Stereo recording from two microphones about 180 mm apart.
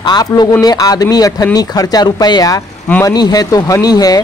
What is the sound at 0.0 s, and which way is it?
Speech, 20° left (ahead or behind).